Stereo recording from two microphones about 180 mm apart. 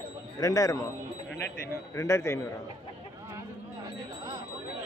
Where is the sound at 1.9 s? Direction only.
15° left (ahead or behind).